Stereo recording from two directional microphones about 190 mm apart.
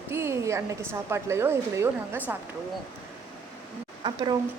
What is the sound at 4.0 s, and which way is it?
Speech, 25° right (ahead or behind).